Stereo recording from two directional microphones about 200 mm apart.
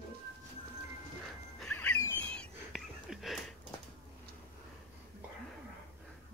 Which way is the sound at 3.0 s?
Centre (ahead or behind).